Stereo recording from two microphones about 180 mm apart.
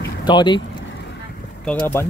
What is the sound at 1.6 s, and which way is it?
Speech, 5° left (ahead or behind).